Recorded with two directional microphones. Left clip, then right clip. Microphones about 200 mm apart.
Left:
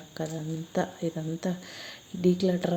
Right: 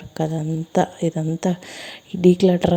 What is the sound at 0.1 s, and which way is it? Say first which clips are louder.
Speech: right 10 dB; 40° right (ahead or behind).